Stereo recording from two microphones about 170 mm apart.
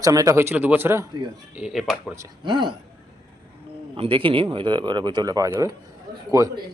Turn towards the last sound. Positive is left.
turn(degrees=-20)  # may be behind; listen again after turning